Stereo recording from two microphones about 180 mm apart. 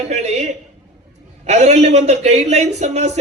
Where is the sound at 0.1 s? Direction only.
40° right (ahead or behind).